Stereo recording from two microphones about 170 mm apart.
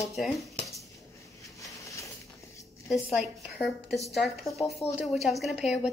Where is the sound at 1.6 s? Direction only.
20° left (ahead or behind).